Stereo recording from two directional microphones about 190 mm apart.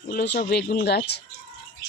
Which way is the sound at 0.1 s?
55° left (ahead or behind).